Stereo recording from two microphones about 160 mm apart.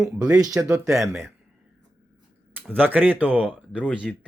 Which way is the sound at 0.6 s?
20° right (ahead or behind).